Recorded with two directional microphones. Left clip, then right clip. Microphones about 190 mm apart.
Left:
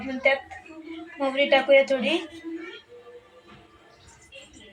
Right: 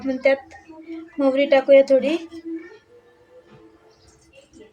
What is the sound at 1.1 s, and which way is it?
Speech, 70° right (ahead or behind).